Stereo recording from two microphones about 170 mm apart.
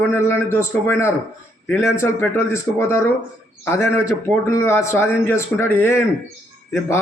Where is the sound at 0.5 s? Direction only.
15° left (ahead or behind).